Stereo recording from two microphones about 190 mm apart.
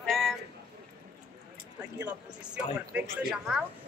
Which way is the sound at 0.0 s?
Centre (ahead or behind).